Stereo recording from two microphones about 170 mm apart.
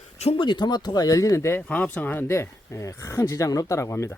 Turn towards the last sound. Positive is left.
turn(degrees=15)  # may be behind; listen again after turning